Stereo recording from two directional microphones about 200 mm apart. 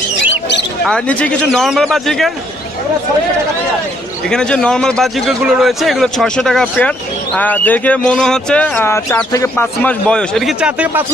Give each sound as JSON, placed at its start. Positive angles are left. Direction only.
{"t": 0.8, "sound": "a man's voice", "side_deg": 5}
{"t": 4.3, "sound": "a man's voice", "side_deg": 5}